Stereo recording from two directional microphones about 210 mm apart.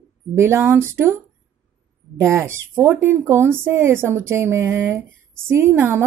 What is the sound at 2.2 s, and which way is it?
A woman's voice, 10° right (ahead or behind).